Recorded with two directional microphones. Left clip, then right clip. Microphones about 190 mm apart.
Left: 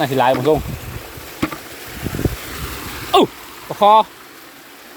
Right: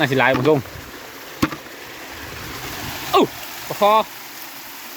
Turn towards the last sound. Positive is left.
turn(degrees=5)  # may be behind; listen again after turning